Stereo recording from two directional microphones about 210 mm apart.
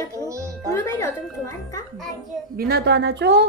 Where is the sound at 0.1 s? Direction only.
15° right (ahead or behind).